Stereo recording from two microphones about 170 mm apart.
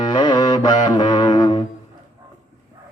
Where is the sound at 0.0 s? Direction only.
25° left (ahead or behind).